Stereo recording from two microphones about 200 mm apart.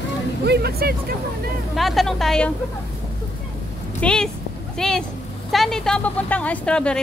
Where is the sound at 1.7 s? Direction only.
Centre (ahead or behind).